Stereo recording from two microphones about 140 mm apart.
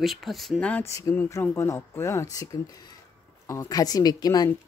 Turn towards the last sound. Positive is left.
turn(degrees=30)  # may be behind; listen again after turning